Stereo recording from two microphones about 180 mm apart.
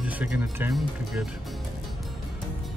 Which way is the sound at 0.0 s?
10° right (ahead or behind).